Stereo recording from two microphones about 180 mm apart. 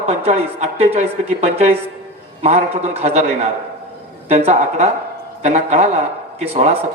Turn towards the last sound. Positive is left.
turn(degrees=-35)  # may be behind; listen again after turning